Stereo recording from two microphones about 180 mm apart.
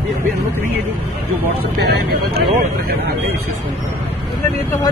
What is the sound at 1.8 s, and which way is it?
Speech, 65° right (ahead or behind).